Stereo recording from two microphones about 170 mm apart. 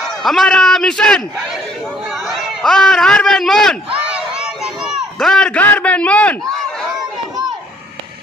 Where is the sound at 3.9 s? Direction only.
5° right (ahead or behind).